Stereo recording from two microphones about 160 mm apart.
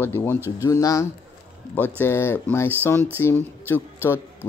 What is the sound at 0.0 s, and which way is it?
Speech, 15° left (ahead or behind).